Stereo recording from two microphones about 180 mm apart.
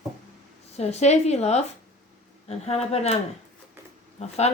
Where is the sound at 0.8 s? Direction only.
35° left (ahead or behind).